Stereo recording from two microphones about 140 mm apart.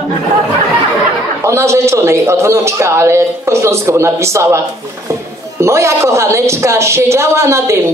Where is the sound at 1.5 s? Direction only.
20° right (ahead or behind).